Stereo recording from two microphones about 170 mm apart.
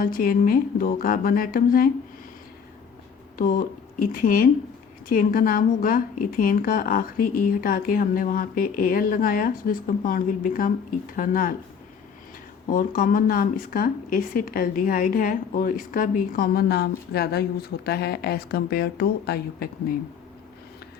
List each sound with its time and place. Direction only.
0.0 s speech: 60° left (ahead or behind)
3.3 s speech: 55° left (ahead or behind)
12.6 s a woman's voice: 50° left (ahead or behind)